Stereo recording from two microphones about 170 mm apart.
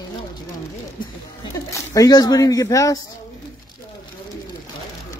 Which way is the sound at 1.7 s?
20° left (ahead or behind).